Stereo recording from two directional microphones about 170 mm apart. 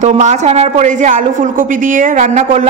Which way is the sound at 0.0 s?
45° right (ahead or behind).